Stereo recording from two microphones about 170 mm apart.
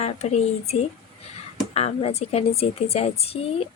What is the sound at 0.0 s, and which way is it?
A woman's voice, 40° left (ahead or behind).